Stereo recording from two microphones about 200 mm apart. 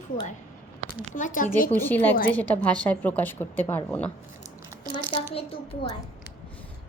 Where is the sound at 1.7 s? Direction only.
10° left (ahead or behind).